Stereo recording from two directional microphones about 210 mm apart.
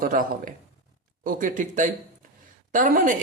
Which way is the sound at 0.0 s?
40° right (ahead or behind).